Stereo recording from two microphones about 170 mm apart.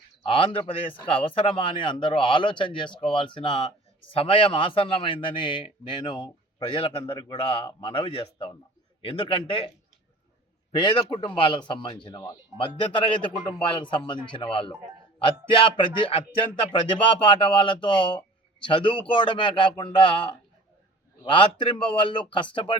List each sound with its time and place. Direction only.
0.2 s a man's voice: 30° left (ahead or behind)
10.7 s speech: 25° left (ahead or behind)